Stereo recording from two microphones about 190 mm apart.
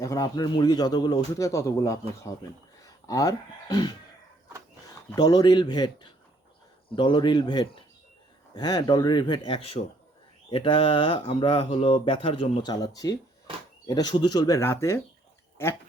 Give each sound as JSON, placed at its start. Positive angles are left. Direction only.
{"t": 0.0, "sound": "speech", "side_deg": 20}
{"t": 5.1, "sound": "speech", "side_deg": 20}